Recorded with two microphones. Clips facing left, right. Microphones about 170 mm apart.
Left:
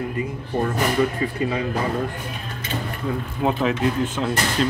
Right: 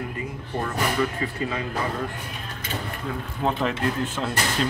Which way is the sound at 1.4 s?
15° left (ahead or behind).